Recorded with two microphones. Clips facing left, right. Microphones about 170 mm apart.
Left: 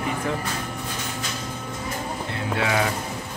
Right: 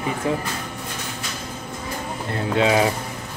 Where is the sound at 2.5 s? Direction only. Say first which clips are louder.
Right 6 dB; 20° right (ahead or behind).